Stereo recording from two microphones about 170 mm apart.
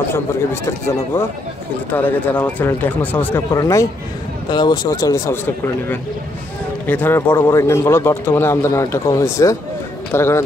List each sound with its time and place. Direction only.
0.1 s speech: 15° left (ahead or behind)